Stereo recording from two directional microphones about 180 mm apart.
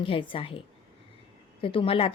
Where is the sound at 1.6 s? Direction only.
30° left (ahead or behind).